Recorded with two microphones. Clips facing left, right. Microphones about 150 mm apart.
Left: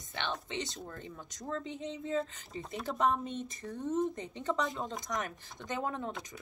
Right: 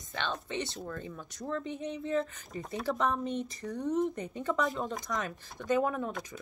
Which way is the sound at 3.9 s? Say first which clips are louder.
Right 1 dB; 20° left (ahead or behind).